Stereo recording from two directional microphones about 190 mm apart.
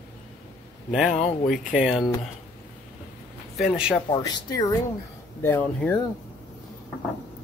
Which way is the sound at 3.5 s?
5° right (ahead or behind).